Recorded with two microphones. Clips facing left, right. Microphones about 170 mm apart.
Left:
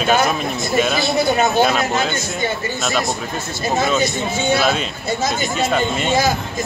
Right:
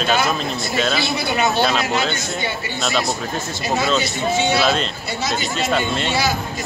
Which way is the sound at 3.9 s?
50° left (ahead or behind).